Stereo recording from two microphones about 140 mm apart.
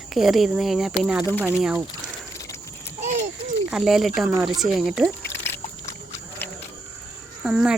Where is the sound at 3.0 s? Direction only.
55° right (ahead or behind).